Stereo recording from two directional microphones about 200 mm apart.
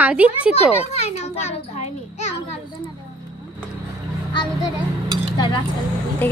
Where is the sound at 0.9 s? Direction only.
35° left (ahead or behind).